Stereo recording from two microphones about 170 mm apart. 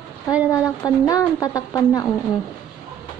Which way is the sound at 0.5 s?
20° left (ahead or behind).